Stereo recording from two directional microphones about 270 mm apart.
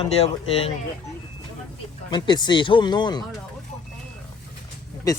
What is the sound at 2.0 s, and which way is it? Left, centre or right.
Speech, centre.